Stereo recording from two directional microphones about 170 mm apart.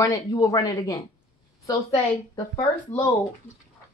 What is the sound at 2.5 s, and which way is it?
Speech, 20° left (ahead or behind).